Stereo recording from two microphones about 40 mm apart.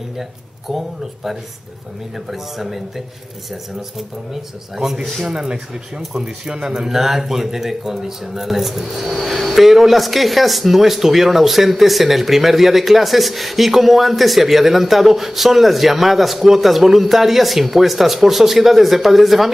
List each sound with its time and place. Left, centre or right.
0.7 s speech: centre
4.7 s speech: centre